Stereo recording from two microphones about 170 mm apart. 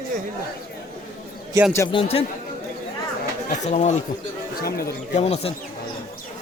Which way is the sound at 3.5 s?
45° left (ahead or behind).